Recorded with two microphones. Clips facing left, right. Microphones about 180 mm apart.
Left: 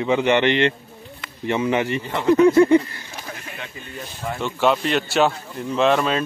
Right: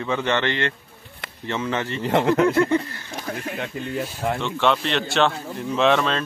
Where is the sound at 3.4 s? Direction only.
55° right (ahead or behind).